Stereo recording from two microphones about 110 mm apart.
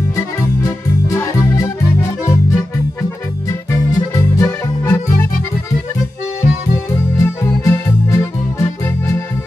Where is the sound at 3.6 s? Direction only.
30° left (ahead or behind).